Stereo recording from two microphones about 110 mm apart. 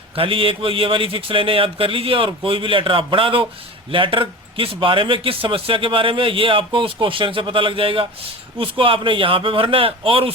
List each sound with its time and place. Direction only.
0.2 s a man's voice: 55° right (ahead or behind)